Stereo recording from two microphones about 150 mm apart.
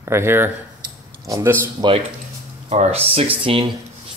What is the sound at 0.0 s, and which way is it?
Speech, 15° right (ahead or behind).